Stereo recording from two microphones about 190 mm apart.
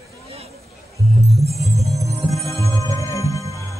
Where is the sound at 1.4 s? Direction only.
35° right (ahead or behind).